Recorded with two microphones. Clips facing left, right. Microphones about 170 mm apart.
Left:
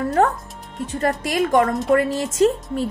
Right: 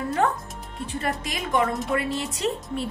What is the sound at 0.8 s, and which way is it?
A woman's voice, 45° left (ahead or behind).